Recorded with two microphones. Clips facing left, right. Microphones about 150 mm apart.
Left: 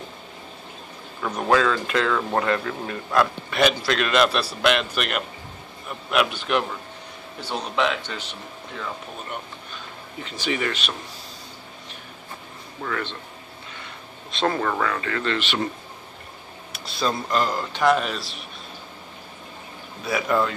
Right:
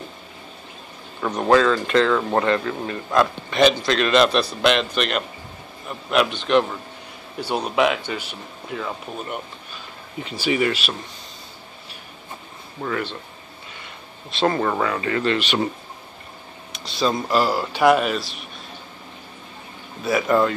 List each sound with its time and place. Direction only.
1.3 s a man's voice: 5° left (ahead or behind)
7.3 s speech: 10° right (ahead or behind)
10.2 s speech: 10° right (ahead or behind)
12.8 s speech: 15° right (ahead or behind)
14.3 s a man's voice: 5° right (ahead or behind)
14.6 s speech: 15° right (ahead or behind)
16.7 s a man's voice: centre (ahead or behind)
20.1 s a man's voice: centre (ahead or behind)